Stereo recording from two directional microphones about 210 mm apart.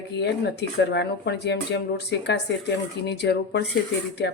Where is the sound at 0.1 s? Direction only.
55° left (ahead or behind).